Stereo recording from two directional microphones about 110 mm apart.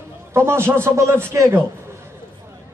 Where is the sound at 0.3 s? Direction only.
20° right (ahead or behind).